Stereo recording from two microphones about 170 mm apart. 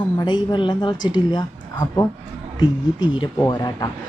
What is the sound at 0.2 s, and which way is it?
Speech, 25° left (ahead or behind).